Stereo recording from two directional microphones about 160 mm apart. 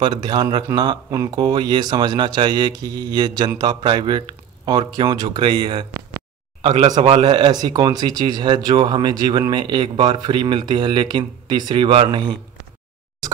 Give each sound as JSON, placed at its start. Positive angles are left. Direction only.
{"t": 0.0, "sound": "speech", "side_deg": -30}
{"t": 6.7, "sound": "speech", "side_deg": -45}